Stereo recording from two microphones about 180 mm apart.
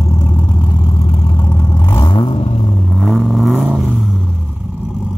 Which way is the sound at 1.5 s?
20° left (ahead or behind).